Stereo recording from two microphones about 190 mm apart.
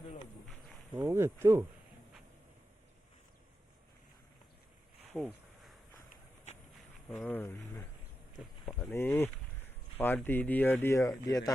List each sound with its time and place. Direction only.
0.9 s speech: 15° right (ahead or behind)
5.1 s a sound: centre (ahead or behind)
7.2 s speech: 10° left (ahead or behind)